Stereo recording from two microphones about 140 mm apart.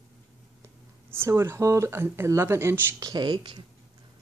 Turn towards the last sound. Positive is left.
turn(degrees=-30)  # may be behind; listen again after turning